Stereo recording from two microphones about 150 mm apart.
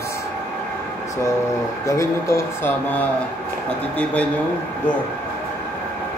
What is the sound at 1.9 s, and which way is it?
A man's voice, 20° left (ahead or behind).